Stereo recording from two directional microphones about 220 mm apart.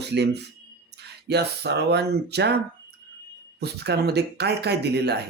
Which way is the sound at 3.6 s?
50° right (ahead or behind).